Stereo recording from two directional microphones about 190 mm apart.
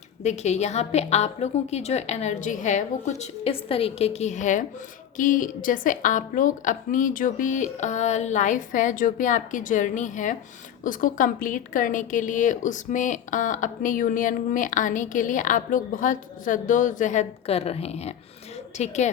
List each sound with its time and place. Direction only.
0.2 s a woman's voice: 35° left (ahead or behind)